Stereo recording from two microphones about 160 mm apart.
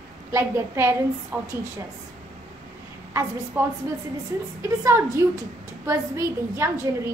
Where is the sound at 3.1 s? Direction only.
20° right (ahead or behind).